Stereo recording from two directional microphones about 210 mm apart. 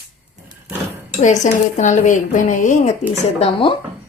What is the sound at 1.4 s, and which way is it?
A woman's voice, 35° left (ahead or behind).